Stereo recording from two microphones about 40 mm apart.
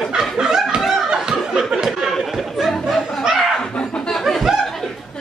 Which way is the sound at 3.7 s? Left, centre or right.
Left.